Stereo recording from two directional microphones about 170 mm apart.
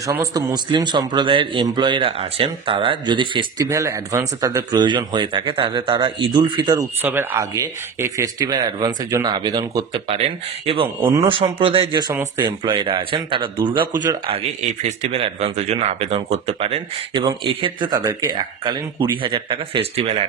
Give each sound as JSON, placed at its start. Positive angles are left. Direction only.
{"t": 0.0, "sound": "a man's voice", "side_deg": -20}
{"t": 14.7, "sound": "a man's voice", "side_deg": -40}